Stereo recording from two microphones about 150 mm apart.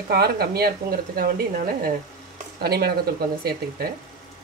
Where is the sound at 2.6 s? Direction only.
90° right.